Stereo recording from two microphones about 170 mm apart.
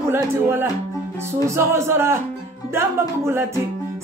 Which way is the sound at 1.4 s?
15° right (ahead or behind).